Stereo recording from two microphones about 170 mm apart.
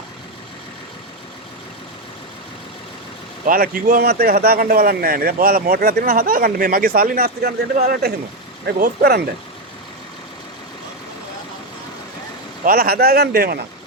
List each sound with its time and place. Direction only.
3.4 s speech: 55° right (ahead or behind)
12.6 s speech: 60° right (ahead or behind)